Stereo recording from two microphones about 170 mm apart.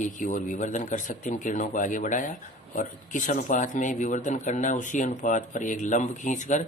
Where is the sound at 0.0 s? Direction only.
45° left (ahead or behind).